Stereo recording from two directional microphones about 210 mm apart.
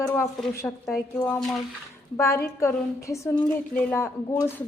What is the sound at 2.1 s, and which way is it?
A woman's voice, 15° left (ahead or behind).